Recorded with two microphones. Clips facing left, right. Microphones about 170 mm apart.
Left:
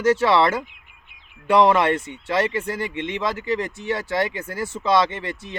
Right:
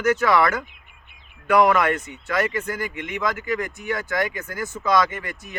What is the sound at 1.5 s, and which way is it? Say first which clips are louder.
Speech: left 1 dB; 30° left (ahead or behind).